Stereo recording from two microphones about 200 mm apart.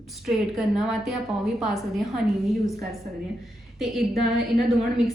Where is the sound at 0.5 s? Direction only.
Centre (ahead or behind).